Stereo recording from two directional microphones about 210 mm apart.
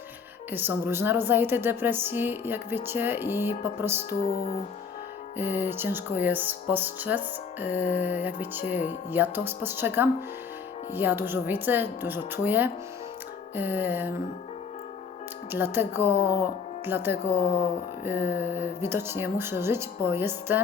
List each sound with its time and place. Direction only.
0.5 s a woman's voice: 10° right (ahead or behind)
4.2 s music: 30° left (ahead or behind)
5.4 s a woman's voice: 10° right (ahead or behind)
15.5 s a woman's voice: 10° right (ahead or behind)
18.3 s a woman's voice: 10° right (ahead or behind)